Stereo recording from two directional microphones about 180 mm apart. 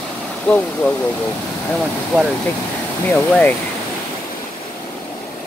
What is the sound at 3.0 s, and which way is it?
Speech, 10° left (ahead or behind).